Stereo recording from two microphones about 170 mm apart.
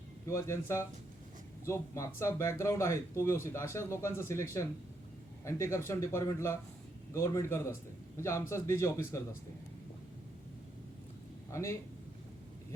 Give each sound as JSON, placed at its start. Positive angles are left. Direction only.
{"t": 0.3, "sound": "speech", "side_deg": 15}
{"t": 11.5, "sound": "speech", "side_deg": 15}